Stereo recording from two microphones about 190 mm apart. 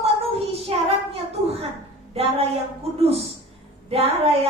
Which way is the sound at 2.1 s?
30° right (ahead or behind).